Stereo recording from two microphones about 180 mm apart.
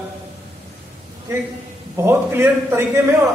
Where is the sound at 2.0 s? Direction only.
15° right (ahead or behind).